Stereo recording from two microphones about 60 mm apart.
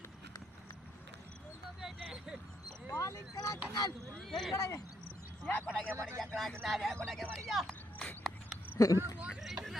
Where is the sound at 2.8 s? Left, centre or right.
Left.